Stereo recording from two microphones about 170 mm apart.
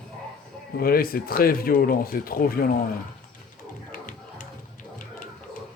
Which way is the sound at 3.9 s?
50° left (ahead or behind).